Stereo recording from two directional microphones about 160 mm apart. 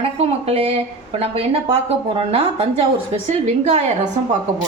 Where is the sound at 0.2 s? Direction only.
40° right (ahead or behind).